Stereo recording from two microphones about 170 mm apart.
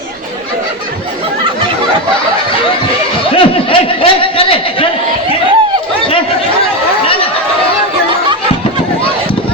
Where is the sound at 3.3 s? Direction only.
30° left (ahead or behind).